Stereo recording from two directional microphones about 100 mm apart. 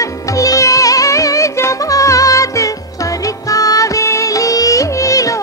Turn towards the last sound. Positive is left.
turn(degrees=35)  # may be behind; listen again after turning